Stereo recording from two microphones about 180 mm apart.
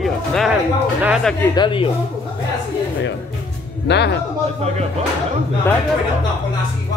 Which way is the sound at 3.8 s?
70° left (ahead or behind).